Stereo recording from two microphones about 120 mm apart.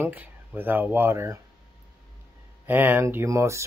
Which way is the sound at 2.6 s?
15° right (ahead or behind).